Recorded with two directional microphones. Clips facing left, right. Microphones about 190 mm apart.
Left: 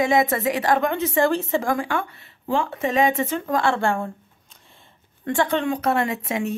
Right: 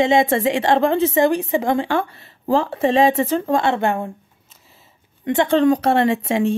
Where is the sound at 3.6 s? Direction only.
20° right (ahead or behind).